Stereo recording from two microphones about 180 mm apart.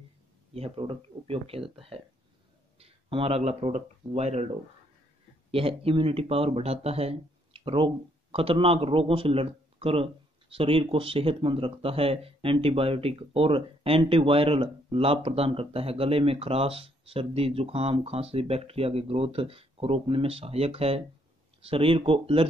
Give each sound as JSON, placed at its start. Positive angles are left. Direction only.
{"t": 0.6, "sound": "speech", "side_deg": -30}
{"t": 2.8, "sound": "speech", "side_deg": -35}